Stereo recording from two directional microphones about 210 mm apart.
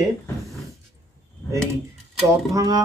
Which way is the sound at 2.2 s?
15° right (ahead or behind).